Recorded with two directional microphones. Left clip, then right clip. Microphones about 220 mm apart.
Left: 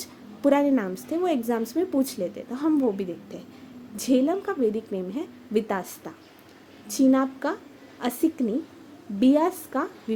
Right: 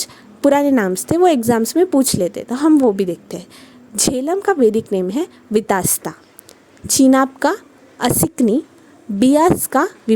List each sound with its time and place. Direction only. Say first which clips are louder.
0.0 s a woman's voice: right 9 dB; 45° right (ahead or behind)